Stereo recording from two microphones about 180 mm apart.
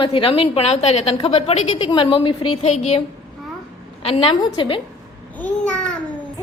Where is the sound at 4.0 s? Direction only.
30° left (ahead or behind).